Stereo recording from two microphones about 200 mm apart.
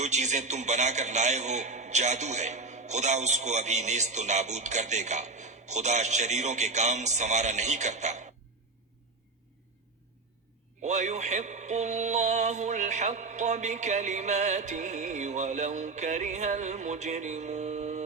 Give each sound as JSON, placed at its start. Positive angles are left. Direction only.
{"t": 0.0, "sound": "a man's voice", "side_deg": -35}
{"t": 10.8, "sound": "a man's voice", "side_deg": -35}